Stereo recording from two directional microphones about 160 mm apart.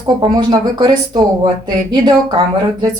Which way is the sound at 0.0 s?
30° right (ahead or behind).